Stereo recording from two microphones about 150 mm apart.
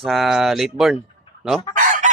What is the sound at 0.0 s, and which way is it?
Speech, centre (ahead or behind).